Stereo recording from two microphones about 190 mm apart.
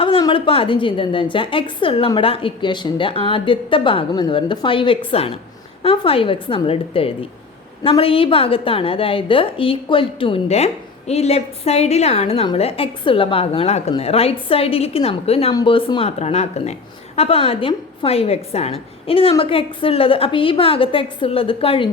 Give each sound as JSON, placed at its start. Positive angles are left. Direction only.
{"t": 0.0, "sound": "a woman's voice", "side_deg": 25}